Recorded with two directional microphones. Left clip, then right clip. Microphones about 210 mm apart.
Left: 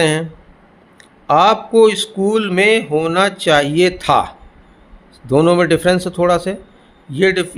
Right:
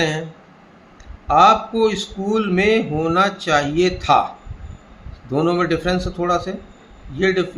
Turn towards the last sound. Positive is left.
turn(degrees=55)  # may be behind; listen again after turning